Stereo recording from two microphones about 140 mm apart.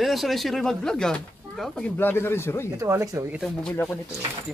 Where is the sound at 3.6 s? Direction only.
5° left (ahead or behind).